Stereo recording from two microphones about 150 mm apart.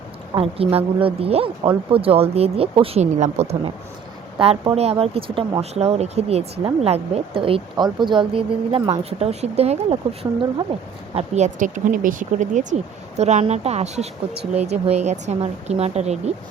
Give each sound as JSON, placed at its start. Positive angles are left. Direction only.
{"t": 0.3, "sound": "a woman's voice", "side_deg": -40}
{"t": 13.1, "sound": "speech", "side_deg": -50}